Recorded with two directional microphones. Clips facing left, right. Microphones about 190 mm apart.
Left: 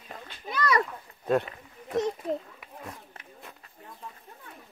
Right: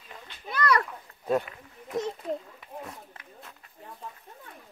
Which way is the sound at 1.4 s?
25° left (ahead or behind).